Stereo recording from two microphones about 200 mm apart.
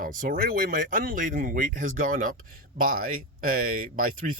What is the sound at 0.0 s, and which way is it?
Speech, 45° right (ahead or behind).